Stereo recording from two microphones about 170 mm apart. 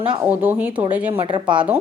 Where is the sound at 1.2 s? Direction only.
25° right (ahead or behind).